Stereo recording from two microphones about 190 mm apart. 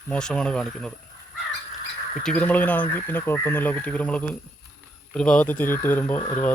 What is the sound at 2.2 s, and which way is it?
Speech, 5° left (ahead or behind).